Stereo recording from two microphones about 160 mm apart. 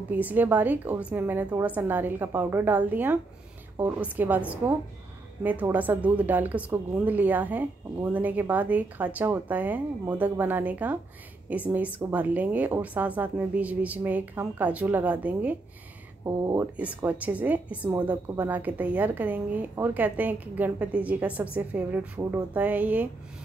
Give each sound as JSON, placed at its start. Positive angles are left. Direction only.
{"t": 0.1, "sound": "a woman's voice", "side_deg": -10}
{"t": 16.3, "sound": "speech", "side_deg": -20}
{"t": 17.0, "sound": "a woman's voice", "side_deg": -10}